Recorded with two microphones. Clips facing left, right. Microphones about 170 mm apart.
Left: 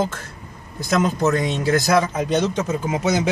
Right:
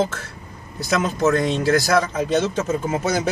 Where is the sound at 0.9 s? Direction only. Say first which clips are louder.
Even; centre (ahead or behind).